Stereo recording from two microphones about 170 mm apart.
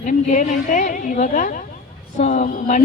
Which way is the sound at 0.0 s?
50° left (ahead or behind).